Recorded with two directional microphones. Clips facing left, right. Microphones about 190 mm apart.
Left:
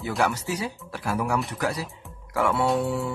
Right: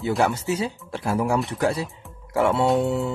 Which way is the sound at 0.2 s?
25° right (ahead or behind).